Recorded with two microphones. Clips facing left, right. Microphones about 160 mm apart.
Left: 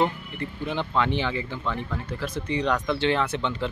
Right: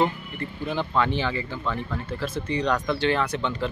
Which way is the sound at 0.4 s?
20° left (ahead or behind).